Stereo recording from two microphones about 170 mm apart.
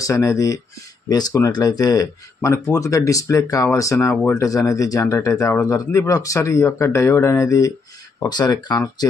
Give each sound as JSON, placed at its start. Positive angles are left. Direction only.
{"t": 0.0, "sound": "speech", "side_deg": 20}